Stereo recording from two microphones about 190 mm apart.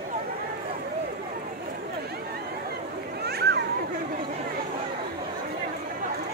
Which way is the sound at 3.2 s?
60° right (ahead or behind).